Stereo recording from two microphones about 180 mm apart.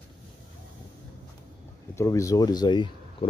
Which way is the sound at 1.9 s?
15° left (ahead or behind).